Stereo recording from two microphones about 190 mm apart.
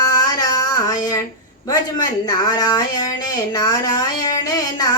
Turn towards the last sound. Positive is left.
turn(degrees=20)  # may be behind; listen again after turning